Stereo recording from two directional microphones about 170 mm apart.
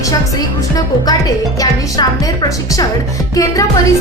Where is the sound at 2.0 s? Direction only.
25° left (ahead or behind).